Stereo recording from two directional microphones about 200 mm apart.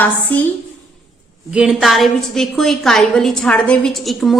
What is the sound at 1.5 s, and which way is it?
A woman's voice, 5° right (ahead or behind).